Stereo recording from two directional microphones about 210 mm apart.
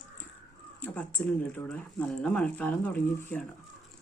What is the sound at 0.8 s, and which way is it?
Speech, 10° left (ahead or behind).